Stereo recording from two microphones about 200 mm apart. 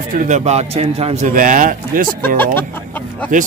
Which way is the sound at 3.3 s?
40° right (ahead or behind).